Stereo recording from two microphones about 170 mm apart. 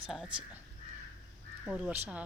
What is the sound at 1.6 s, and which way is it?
Speech, 5° right (ahead or behind).